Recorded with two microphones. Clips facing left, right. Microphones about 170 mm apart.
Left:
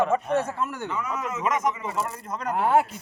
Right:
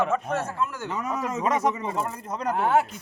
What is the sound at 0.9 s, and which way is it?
Speech, 40° right (ahead or behind).